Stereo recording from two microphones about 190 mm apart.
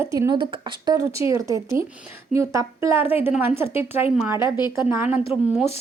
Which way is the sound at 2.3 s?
15° right (ahead or behind).